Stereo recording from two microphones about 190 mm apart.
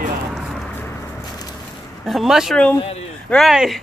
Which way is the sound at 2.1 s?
Centre (ahead or behind).